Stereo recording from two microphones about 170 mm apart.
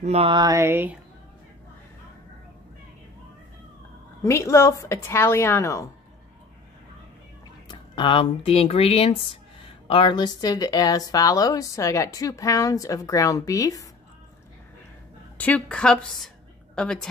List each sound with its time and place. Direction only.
0.0 s a sound: 35° right (ahead or behind); by 0.9 s 15° right (ahead or behind)
4.2 s a woman's voice: 15° left (ahead or behind)
7.6 s speech: 25° left (ahead or behind)
15.3 s speech: 10° left (ahead or behind)